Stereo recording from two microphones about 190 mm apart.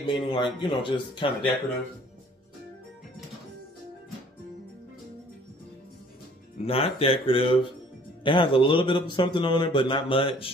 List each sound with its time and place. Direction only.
0.0 s a man's voice: 25° left (ahead or behind)
6.6 s a man's voice: 30° left (ahead or behind)